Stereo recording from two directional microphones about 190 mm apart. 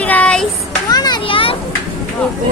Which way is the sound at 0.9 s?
20° left (ahead or behind).